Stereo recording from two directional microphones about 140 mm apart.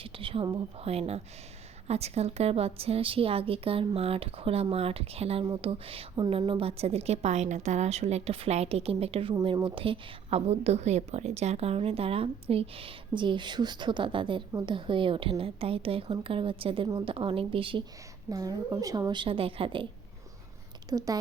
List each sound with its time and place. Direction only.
0.0 s a sound: 40° right (ahead or behind)
0.8 s a woman's voice: 45° right (ahead or behind)
18.3 s a woman's voice: 25° right (ahead or behind)
20.9 s speech: 25° right (ahead or behind)